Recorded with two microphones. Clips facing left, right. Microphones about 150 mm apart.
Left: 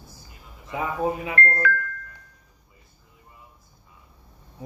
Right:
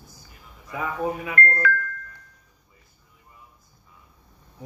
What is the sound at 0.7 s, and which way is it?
Speech, 25° left (ahead or behind).